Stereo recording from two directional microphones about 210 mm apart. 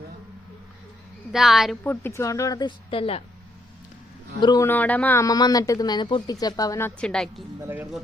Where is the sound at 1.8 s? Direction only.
10° left (ahead or behind); by 3.2 s 25° left (ahead or behind).